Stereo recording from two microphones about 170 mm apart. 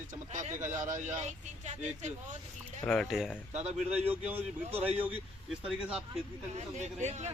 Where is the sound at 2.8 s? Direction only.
5° left (ahead or behind).